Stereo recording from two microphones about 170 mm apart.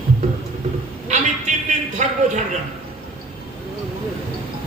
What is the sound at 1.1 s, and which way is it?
Speech, 45° right (ahead or behind).